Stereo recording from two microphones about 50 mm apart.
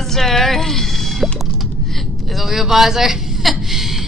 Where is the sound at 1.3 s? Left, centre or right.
Centre.